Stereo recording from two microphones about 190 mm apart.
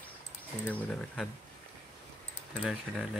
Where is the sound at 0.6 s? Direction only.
5° left (ahead or behind).